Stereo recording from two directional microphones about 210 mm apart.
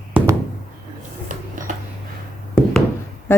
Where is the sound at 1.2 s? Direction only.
40° right (ahead or behind).